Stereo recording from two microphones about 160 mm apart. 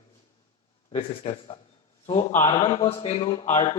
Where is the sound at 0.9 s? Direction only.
35° left (ahead or behind).